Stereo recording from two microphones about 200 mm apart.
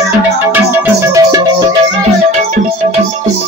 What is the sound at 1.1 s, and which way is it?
Music, 20° right (ahead or behind).